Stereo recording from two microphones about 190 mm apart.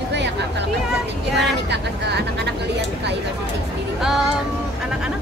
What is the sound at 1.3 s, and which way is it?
Vehicle, 60° right (ahead or behind).